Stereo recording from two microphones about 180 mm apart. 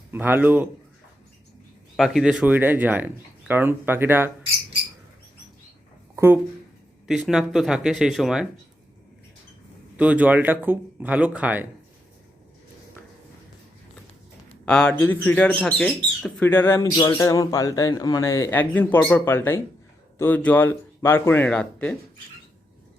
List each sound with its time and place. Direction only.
0.1 s speech: 10° right (ahead or behind)
2.0 s speech: centre (ahead or behind)
6.1 s speech: 15° right (ahead or behind)
10.0 s speech: 10° right (ahead or behind)
14.6 s speech: 5° left (ahead or behind)